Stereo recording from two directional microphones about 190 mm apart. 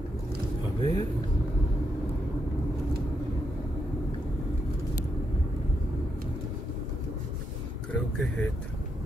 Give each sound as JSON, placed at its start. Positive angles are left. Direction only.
{"t": 0.7, "sound": "vehicle", "side_deg": 25}
{"t": 7.9, "sound": "vehicle", "side_deg": 5}